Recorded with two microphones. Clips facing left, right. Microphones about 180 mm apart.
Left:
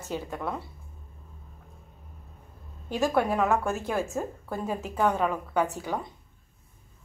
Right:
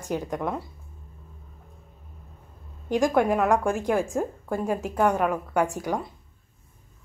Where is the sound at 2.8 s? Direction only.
15° right (ahead or behind).